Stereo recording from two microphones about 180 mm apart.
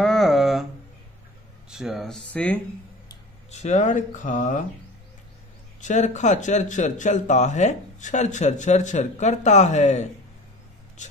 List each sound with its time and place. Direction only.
0.0 s a sound: centre (ahead or behind)
1.7 s speech: 5° right (ahead or behind)
3.5 s speech: 40° left (ahead or behind)
5.8 s speech: 40° left (ahead or behind)